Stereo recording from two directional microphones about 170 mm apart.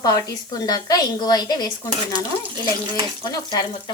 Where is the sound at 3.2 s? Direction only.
25° left (ahead or behind).